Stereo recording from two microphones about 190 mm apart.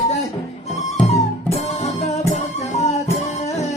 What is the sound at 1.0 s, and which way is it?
Music, 35° left (ahead or behind).